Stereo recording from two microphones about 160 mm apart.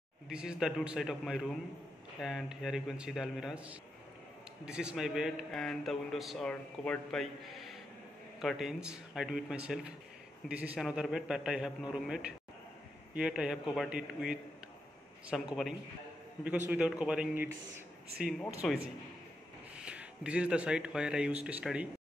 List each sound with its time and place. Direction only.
0.3 s a man's voice: 5° right (ahead or behind)